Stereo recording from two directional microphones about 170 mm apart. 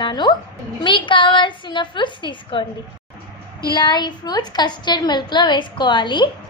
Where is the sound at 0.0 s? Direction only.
25° left (ahead or behind).